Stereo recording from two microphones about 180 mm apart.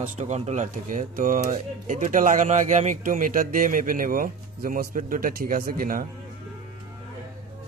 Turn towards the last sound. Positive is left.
turn(degrees=-50)  # may be behind; listen again after turning